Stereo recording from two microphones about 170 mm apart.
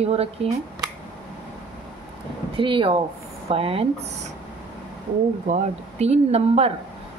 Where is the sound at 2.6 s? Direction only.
30° right (ahead or behind).